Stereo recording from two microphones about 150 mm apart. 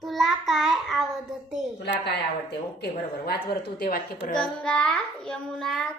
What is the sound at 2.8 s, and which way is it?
A woman's voice, 90° left.